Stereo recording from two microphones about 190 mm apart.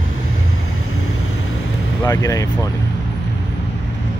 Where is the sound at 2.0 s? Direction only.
20° left (ahead or behind).